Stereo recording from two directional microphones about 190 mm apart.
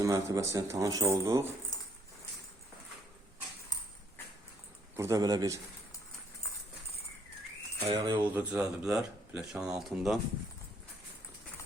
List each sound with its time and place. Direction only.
0.0 s speech: 15° right (ahead or behind)
4.9 s speech: 15° right (ahead or behind)
7.9 s cutlery: 20° right (ahead or behind)
8.2 s speech: 10° right (ahead or behind)